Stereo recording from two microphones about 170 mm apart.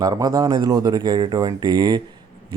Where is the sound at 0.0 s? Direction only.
25° right (ahead or behind).